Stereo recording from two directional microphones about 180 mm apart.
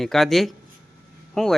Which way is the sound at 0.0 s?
Centre (ahead or behind).